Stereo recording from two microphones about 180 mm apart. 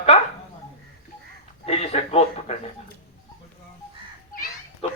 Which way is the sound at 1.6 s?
35° left (ahead or behind).